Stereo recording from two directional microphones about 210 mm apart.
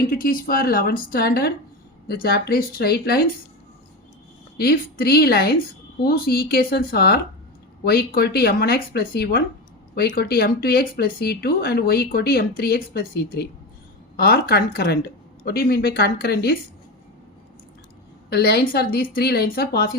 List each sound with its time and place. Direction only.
0.0 s speech: 45° left (ahead or behind)
4.5 s speech: 45° left (ahead or behind)
18.3 s speech: 50° left (ahead or behind)